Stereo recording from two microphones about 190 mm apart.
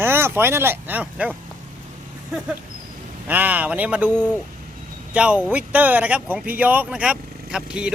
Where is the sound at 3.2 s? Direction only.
10° right (ahead or behind).